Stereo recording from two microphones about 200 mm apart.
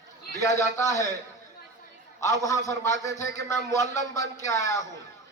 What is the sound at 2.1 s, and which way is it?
A man's voice, 15° left (ahead or behind).